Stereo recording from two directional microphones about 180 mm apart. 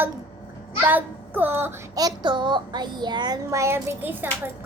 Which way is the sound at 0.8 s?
10° right (ahead or behind).